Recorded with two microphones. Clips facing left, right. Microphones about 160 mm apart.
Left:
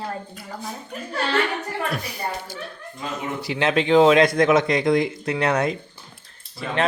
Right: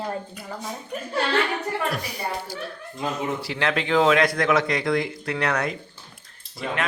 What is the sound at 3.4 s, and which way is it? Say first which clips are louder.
Speech: left 4 dB; 20° left (ahead or behind).